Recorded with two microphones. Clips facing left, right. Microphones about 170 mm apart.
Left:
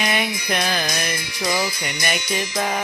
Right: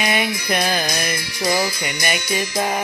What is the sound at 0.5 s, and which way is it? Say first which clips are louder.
Music: right 2 dB; 35° right (ahead or behind).